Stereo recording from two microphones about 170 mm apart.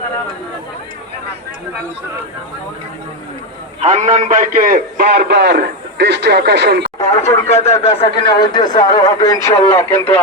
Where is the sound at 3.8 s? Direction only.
40° right (ahead or behind); by 6.8 s 80° right.